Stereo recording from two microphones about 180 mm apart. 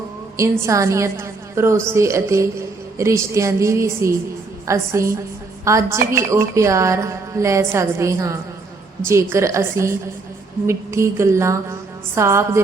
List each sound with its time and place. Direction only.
0.3 s a woman's voice: 15° right (ahead or behind)